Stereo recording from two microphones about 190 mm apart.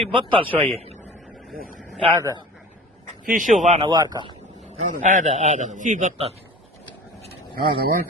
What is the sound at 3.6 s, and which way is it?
Speech, 30° right (ahead or behind).